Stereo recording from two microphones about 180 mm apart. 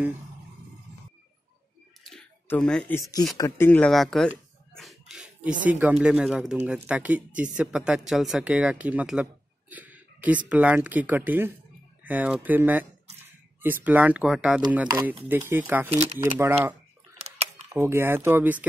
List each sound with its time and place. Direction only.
2.0 s a sound: 5° left (ahead or behind)
3.0 s speech: 20° left (ahead or behind); by 14.6 s 5° right (ahead or behind)
14.9 s speech: 20° right (ahead or behind)
17.7 s speech: 15° right (ahead or behind)